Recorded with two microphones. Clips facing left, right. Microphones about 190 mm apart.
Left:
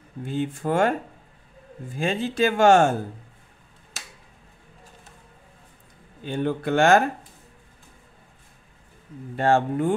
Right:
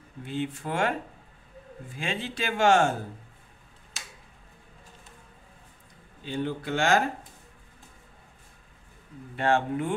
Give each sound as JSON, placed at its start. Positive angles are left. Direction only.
{"t": 0.2, "sound": "speech", "side_deg": 45}
{"t": 2.0, "sound": "speech", "side_deg": 45}
{"t": 6.2, "sound": "a man's voice", "side_deg": 55}
{"t": 9.4, "sound": "speech", "side_deg": 40}